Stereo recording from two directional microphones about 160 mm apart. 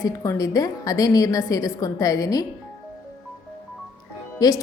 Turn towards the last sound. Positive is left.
turn(degrees=20)  # may be behind; listen again after turning